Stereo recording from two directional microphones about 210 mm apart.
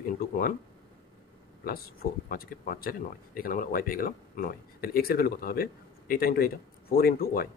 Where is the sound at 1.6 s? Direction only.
45° left (ahead or behind).